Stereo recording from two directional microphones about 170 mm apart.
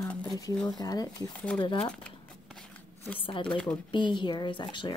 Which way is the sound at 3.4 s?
5° left (ahead or behind).